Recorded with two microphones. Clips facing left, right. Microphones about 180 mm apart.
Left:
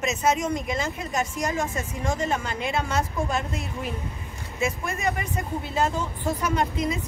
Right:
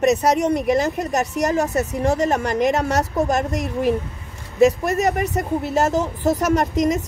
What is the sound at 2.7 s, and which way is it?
Speech, 40° right (ahead or behind).